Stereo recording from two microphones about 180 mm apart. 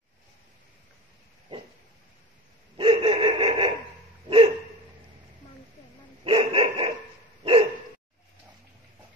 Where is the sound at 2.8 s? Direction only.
30° right (ahead or behind).